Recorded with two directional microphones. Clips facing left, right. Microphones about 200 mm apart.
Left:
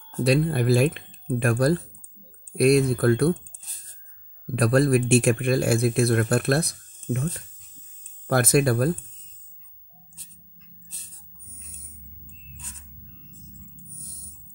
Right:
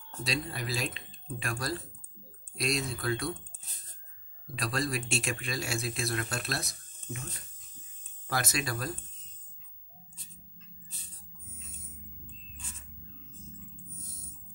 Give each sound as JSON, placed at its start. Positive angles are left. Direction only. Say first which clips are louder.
{"t": 0.2, "sound": "speech", "louder": "left 14 dB", "side_deg": 60}
{"t": 4.6, "sound": "speech", "louder": "left 14 dB", "side_deg": 55}